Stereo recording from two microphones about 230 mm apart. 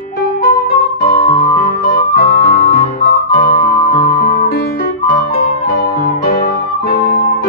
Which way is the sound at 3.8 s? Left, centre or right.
Left.